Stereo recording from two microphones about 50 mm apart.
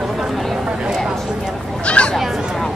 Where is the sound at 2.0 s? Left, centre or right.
Left.